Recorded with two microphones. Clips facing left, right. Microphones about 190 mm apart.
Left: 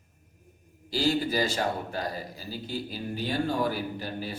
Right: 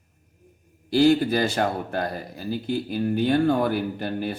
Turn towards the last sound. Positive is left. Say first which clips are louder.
# right 6 dB
turn(degrees=-60)  # may be behind; listen again after turning